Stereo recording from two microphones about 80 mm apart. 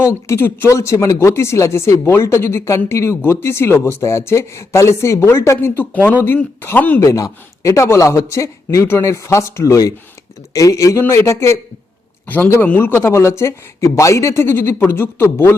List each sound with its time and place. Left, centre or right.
0.0 s speech: left
7.0 s a man's voice: left